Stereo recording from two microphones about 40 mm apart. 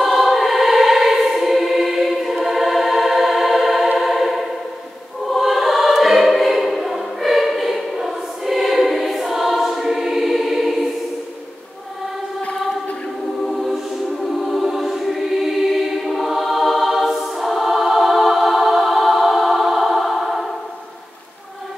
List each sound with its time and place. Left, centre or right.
0.0 s choir: centre
12.4 s choir: left
13.4 s music: centre
14.2 s choir: centre